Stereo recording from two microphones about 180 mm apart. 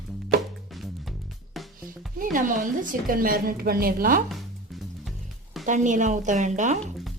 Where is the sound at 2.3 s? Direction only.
45° right (ahead or behind).